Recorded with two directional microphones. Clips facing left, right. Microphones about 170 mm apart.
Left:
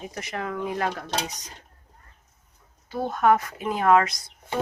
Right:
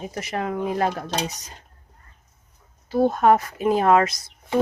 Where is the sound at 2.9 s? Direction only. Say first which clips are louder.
Right 4 dB; 30° right (ahead or behind).